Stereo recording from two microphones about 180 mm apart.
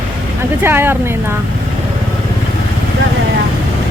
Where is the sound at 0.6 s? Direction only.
10° right (ahead or behind).